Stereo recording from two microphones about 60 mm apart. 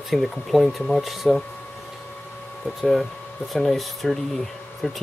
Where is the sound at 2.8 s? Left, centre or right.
Centre.